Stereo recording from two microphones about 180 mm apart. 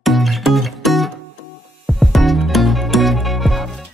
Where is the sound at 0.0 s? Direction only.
Centre (ahead or behind).